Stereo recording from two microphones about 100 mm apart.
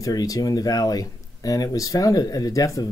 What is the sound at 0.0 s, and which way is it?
Speech, 35° left (ahead or behind).